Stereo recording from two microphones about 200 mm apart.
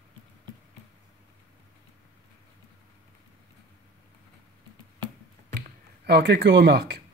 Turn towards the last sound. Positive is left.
turn(degrees=-55)  # may be behind; listen again after turning